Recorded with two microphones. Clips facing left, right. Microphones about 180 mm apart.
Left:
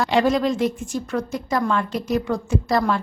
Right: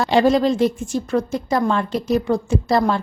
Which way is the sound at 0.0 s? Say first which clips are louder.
Right 3 dB; 30° right (ahead or behind).